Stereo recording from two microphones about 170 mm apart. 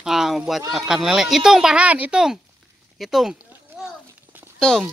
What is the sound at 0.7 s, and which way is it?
Speech, centre (ahead or behind).